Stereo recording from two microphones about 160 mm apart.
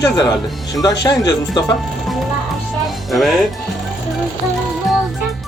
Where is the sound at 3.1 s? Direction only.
Centre (ahead or behind).